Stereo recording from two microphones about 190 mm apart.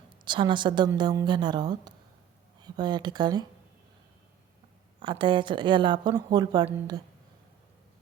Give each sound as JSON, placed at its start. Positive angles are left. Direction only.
{"t": 0.3, "sound": "a woman's voice", "side_deg": -25}
{"t": 4.9, "sound": "a woman's voice", "side_deg": -25}